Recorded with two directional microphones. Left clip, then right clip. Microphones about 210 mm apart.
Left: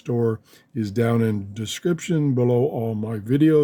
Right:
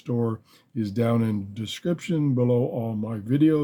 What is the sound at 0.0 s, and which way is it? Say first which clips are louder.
Speech: left 5 dB; 50° left (ahead or behind).